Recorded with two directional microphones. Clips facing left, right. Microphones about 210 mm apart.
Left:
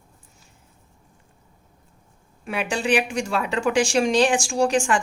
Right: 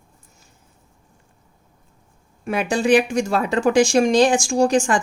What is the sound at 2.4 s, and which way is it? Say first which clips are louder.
Speech: right 5 dB; 45° right (ahead or behind).